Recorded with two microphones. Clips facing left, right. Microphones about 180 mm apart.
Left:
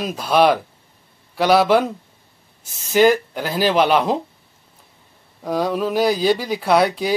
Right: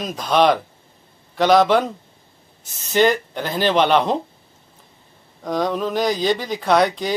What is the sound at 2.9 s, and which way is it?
Speech, 5° left (ahead or behind).